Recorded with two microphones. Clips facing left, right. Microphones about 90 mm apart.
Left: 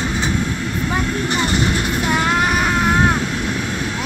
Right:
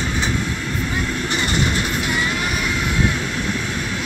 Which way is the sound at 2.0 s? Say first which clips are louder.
Left 5 dB; 70° left (ahead or behind).